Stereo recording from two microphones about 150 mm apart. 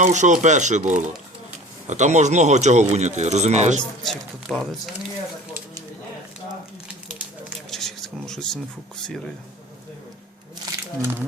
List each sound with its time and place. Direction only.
0.0 s speech: 55° right (ahead or behind)
4.0 s speech: centre (ahead or behind)
7.7 s a sound: centre (ahead or behind)
11.0 s speech: 15° right (ahead or behind)